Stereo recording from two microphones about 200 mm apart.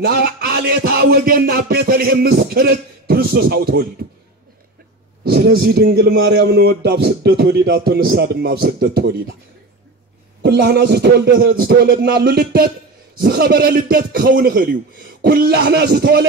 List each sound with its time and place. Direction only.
0.0 s a man's voice: 50° right (ahead or behind)
5.2 s a man's voice: 50° right (ahead or behind)
10.4 s a man's voice: 55° right (ahead or behind)